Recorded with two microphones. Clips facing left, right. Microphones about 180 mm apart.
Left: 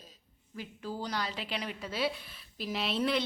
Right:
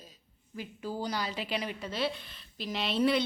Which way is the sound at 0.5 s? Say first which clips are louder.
Right 2 dB; 5° right (ahead or behind).